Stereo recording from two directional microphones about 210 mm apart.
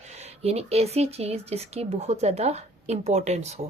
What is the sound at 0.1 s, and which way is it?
Speech, 30° right (ahead or behind).